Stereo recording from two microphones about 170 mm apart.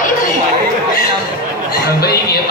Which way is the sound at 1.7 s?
70° left (ahead or behind).